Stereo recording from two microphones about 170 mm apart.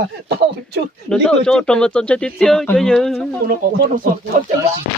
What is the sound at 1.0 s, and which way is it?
Speech, 5° left (ahead or behind).